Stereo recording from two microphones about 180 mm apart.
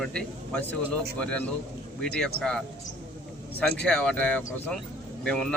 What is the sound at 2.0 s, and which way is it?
A man's voice, 5° left (ahead or behind).